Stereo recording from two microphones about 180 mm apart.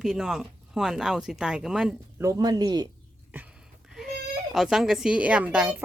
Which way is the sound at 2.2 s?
20° right (ahead or behind).